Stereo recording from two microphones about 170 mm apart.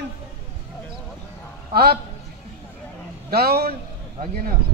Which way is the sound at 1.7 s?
65° right (ahead or behind).